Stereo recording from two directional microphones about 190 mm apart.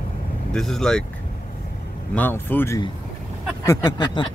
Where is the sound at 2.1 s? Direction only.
10° left (ahead or behind).